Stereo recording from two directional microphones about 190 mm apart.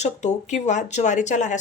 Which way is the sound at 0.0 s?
35° left (ahead or behind).